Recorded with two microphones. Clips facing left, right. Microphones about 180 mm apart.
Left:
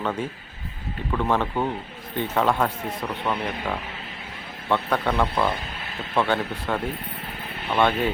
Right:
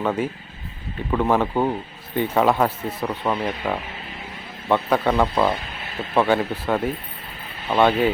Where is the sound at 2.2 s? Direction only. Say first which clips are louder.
Right 4 dB; 5° right (ahead or behind).